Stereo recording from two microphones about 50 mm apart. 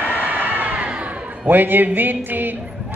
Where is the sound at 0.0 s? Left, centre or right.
Right.